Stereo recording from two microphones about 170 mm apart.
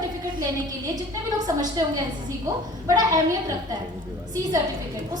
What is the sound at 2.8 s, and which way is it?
Speech, 20° right (ahead or behind).